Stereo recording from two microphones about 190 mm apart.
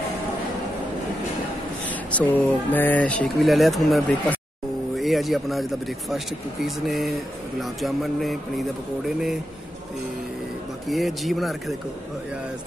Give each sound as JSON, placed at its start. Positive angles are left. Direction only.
{"t": 1.9, "sound": "speech", "side_deg": 10}
{"t": 10.9, "sound": "speech", "side_deg": 0}